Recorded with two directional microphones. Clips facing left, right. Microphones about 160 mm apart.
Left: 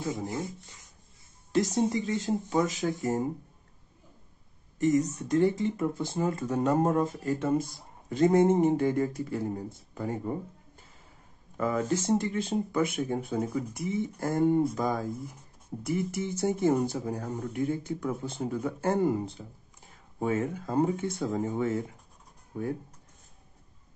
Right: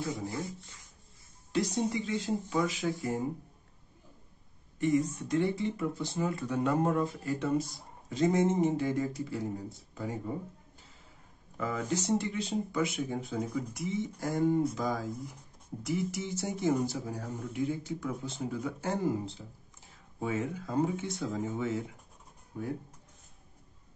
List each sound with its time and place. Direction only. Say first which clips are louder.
0.1 s speech: left 3 dB; 20° left (ahead or behind)
1.5 s speech: left 4 dB; 45° left (ahead or behind)
4.7 s speech: left 3 dB; 40° left (ahead or behind)
11.5 s speech: left 5 dB; 55° left (ahead or behind)